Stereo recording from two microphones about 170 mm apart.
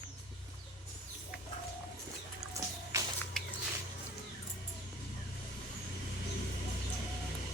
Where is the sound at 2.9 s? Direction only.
20° right (ahead or behind).